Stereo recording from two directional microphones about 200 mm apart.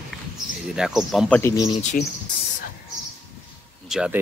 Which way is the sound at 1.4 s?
15° left (ahead or behind).